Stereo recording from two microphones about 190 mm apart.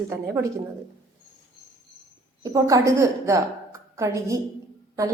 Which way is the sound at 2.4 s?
20° right (ahead or behind).